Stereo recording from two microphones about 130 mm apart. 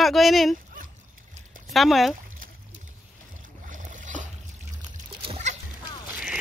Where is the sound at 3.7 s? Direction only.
80° right.